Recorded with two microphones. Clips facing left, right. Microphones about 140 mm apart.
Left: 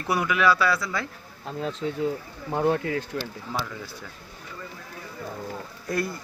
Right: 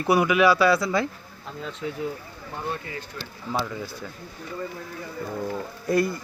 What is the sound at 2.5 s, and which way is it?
Speech, 80° left.